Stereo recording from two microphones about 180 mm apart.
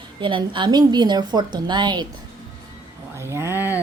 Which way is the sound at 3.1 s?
15° right (ahead or behind).